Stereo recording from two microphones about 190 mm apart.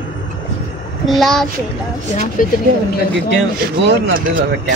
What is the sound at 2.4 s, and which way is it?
Speech, 45° left (ahead or behind).